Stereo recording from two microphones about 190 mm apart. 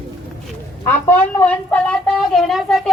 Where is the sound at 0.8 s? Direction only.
10° left (ahead or behind).